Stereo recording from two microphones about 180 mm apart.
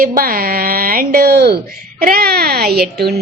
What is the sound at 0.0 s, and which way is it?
Speech, 50° right (ahead or behind).